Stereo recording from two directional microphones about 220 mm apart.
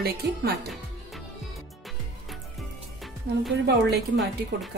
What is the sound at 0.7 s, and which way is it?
Music, centre (ahead or behind).